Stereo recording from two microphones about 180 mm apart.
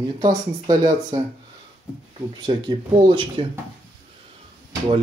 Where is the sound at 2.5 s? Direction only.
25° right (ahead or behind).